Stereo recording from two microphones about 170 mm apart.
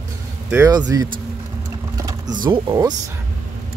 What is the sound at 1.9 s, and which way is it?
Speech, 25° right (ahead or behind).